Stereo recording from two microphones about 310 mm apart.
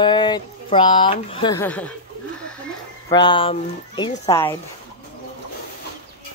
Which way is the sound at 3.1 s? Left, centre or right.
Centre.